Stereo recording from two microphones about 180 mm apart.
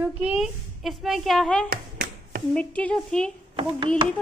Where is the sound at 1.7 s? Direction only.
55° right (ahead or behind).